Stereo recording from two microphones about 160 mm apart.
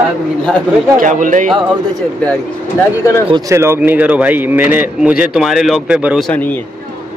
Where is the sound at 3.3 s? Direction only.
15° right (ahead or behind).